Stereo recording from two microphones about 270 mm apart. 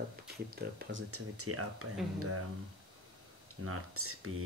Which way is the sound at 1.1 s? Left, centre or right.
Right.